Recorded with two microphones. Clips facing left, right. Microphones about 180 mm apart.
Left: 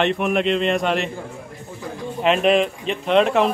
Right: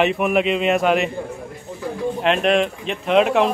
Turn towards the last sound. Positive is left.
turn(degrees=0)  # may be behind; listen again after turning